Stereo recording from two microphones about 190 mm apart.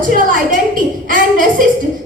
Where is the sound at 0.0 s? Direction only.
45° right (ahead or behind).